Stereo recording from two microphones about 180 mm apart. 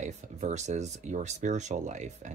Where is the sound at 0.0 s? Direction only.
40° right (ahead or behind).